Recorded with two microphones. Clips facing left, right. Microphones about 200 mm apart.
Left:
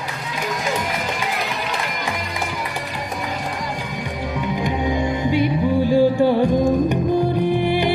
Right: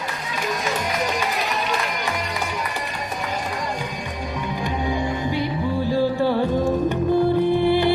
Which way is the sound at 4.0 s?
20° left (ahead or behind).